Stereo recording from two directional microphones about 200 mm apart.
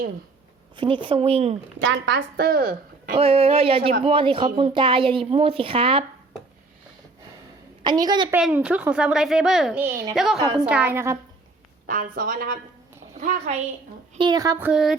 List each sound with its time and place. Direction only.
0.8 s speech: 25° right (ahead or behind)
1.8 s a woman's voice: 65° right (ahead or behind)
3.2 s speech: 30° right (ahead or behind)
7.9 s speech: 20° right (ahead or behind)
8.3 s speech: 5° right (ahead or behind)
10.4 s speech: 20° right (ahead or behind)
10.7 s speech: 5° right (ahead or behind)
11.9 s a woman's voice: 45° right (ahead or behind)
14.2 s speech: 20° right (ahead or behind); by 14.9 s 5° right (ahead or behind)